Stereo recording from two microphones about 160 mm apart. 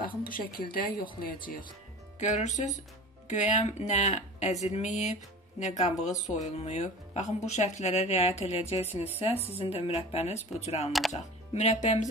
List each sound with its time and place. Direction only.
0.2 s a woman's voice: 60° left (ahead or behind)
2.1 s speech: 50° left (ahead or behind)
10.9 s speech: centre (ahead or behind)
11.1 s speech: 45° left (ahead or behind)